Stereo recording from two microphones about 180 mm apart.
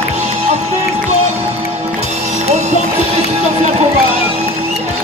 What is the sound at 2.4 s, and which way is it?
Music, 40° right (ahead or behind).